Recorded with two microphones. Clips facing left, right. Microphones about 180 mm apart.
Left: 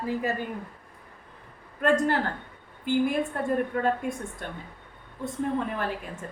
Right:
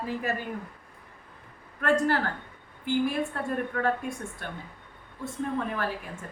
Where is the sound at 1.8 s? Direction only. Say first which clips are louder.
Left 1 dB; 20° left (ahead or behind).